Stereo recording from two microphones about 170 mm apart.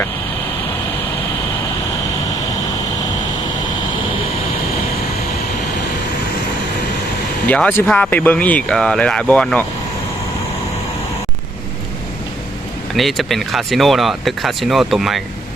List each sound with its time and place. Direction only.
7.4 s speech: 10° left (ahead or behind)
12.9 s speech: centre (ahead or behind)